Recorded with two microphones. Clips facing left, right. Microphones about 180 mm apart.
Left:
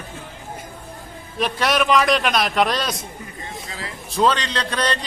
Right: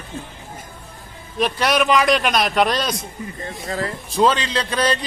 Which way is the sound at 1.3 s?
Centre (ahead or behind).